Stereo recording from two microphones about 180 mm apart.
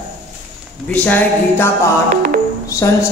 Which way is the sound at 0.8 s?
10° left (ahead or behind).